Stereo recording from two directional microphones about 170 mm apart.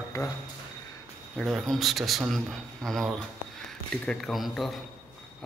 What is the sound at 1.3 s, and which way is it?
A man's voice, centre (ahead or behind).